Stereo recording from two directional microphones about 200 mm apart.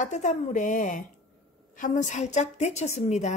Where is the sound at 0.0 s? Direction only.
40° left (ahead or behind).